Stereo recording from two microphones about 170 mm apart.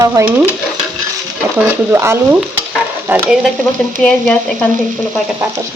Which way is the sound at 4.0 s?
5° left (ahead or behind).